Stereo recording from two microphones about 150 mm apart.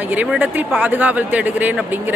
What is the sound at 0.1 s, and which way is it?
Speech, 10° right (ahead or behind).